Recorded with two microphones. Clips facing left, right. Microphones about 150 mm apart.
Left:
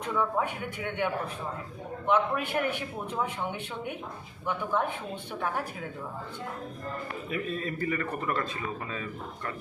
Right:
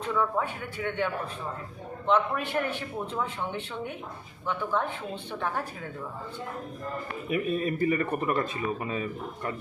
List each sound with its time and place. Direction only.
0.1 s a man's voice: 15° left (ahead or behind)
7.3 s a man's voice: 15° right (ahead or behind)